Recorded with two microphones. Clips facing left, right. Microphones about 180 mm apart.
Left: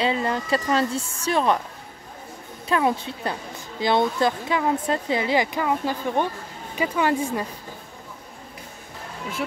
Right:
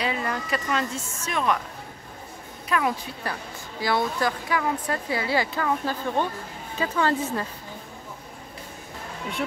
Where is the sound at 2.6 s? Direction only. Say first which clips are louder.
Left 4 dB; 30° left (ahead or behind).